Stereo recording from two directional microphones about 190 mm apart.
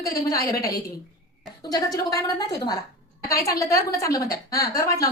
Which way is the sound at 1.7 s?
20° left (ahead or behind).